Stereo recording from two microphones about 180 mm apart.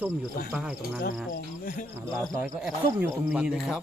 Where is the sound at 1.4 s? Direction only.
50° left (ahead or behind).